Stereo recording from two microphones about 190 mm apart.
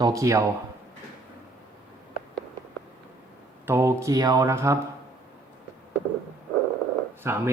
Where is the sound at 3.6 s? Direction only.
15° right (ahead or behind).